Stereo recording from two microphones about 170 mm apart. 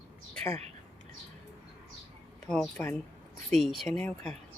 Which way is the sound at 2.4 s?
5° left (ahead or behind).